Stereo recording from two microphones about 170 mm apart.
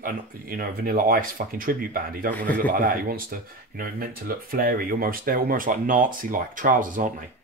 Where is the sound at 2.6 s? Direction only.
55° right (ahead or behind).